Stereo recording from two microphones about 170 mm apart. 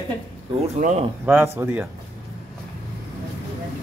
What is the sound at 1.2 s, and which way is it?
Speech, 15° right (ahead or behind).